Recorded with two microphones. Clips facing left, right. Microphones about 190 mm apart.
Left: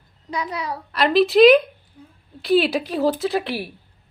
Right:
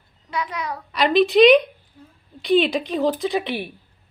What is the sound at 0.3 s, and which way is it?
Speech, 35° left (ahead or behind).